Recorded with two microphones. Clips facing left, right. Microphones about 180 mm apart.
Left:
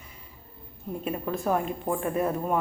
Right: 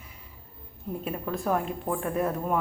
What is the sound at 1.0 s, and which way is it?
A woman's voice, centre (ahead or behind).